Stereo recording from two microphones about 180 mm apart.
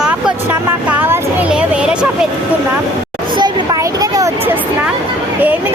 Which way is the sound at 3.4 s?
20° right (ahead or behind).